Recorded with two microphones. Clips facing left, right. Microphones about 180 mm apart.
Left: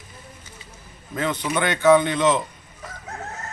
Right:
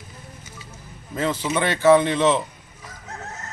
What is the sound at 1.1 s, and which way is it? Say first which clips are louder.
Speech: right 1 dB; 5° right (ahead or behind).